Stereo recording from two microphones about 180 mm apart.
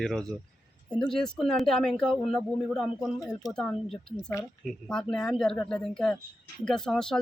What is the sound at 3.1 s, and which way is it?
Speech, 20° left (ahead or behind).